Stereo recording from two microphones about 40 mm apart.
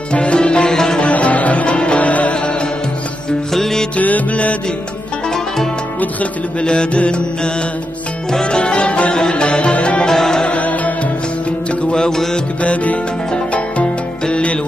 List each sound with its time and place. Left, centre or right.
0.1 s music: left
1.0 s music: left
3.5 s music: centre
3.9 s music: left
6.6 s music: left
10.0 s music: centre
10.4 s music: left
11.9 s music: centre
12.6 s music: left